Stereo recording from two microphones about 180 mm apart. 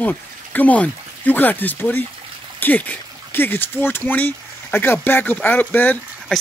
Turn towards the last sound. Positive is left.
turn(degrees=10)  # may be behind; listen again after turning